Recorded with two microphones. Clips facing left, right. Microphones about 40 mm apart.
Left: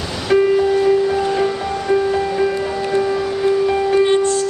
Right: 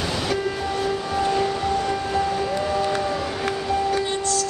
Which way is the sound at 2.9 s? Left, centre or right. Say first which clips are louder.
Left 6 dB; centre.